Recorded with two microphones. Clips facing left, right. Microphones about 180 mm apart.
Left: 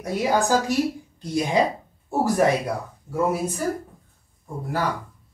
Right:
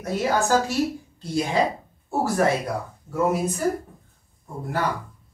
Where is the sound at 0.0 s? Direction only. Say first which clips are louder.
Left 1 dB; 15° left (ahead or behind).